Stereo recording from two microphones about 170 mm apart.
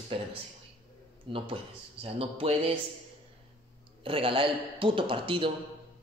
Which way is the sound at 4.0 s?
30° right (ahead or behind).